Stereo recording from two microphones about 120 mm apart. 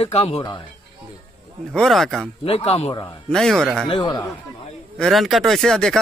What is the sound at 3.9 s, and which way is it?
Speech, 40° left (ahead or behind).